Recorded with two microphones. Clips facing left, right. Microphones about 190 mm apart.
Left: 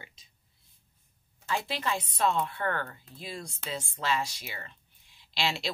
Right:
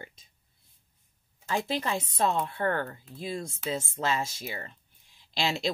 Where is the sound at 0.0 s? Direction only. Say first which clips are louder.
Right 6 dB; 50° right (ahead or behind).